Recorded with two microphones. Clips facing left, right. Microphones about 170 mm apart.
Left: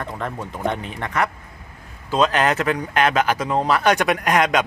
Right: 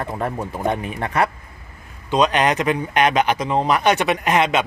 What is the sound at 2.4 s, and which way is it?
Speech, 10° right (ahead or behind).